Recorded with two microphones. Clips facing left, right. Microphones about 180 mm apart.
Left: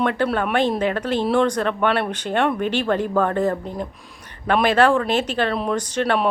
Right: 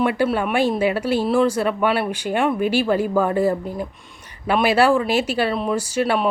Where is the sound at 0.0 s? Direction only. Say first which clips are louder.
Right 1 dB; 10° right (ahead or behind).